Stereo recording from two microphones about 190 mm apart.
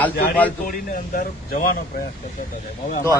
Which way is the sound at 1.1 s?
50° left (ahead or behind).